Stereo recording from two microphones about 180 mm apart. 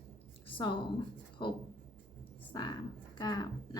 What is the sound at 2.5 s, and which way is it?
Speech, 25° left (ahead or behind).